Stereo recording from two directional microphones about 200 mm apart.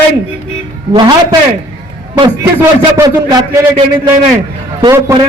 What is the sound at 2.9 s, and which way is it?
Speech, 20° right (ahead or behind).